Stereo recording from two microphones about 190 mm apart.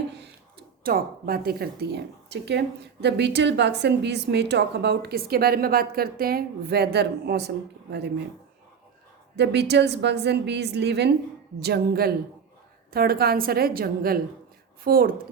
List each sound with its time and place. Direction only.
0.9 s a woman's voice: 50° right (ahead or behind)
9.3 s a woman's voice: 65° right (ahead or behind)